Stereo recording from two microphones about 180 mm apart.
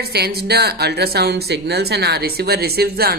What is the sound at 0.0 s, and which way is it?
Speech, 60° right (ahead or behind).